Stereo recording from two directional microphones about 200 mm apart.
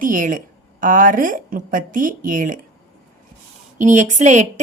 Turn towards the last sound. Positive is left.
turn(degrees=-35)  # may be behind; listen again after turning